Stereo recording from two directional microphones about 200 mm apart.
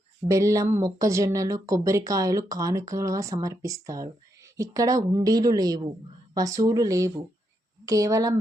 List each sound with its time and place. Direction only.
0.3 s speech: 15° right (ahead or behind)